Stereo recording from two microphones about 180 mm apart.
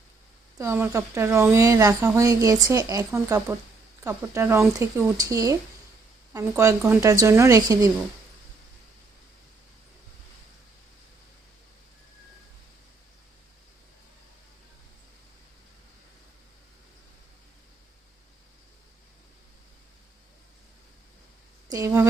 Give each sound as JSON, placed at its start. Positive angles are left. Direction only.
{"t": 0.6, "sound": "speech", "side_deg": -15}
{"t": 21.7, "sound": "speech", "side_deg": -15}